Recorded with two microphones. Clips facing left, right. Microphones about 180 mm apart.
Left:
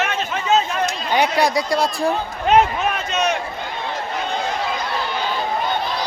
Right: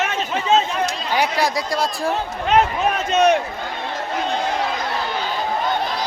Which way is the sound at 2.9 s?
45° right (ahead or behind).